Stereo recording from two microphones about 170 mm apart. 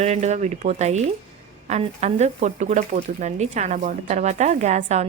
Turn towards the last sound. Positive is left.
turn(degrees=-45)  # may be behind; listen again after turning